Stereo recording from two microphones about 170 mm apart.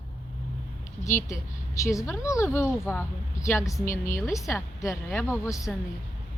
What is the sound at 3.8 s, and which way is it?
Speech, 50° left (ahead or behind).